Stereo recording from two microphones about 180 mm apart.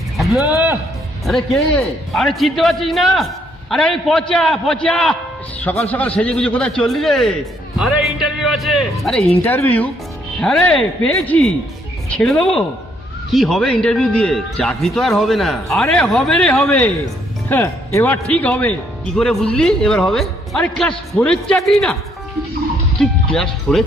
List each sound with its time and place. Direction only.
0.2 s speech: centre (ahead or behind)
9.4 s speech: 10° left (ahead or behind)
11.1 s speech: 5° left (ahead or behind)
22.9 s speech: 5° left (ahead or behind)